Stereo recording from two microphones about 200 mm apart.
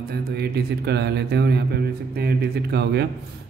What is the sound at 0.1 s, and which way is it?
Speech, 55° right (ahead or behind).